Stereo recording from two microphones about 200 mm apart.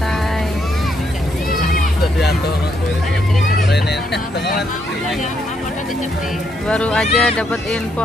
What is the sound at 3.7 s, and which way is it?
Speech, 55° left (ahead or behind).